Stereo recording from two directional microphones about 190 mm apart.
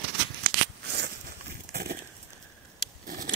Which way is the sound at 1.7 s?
55° right (ahead or behind).